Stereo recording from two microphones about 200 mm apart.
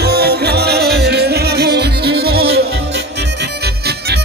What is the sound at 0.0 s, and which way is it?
Music, 55° right (ahead or behind).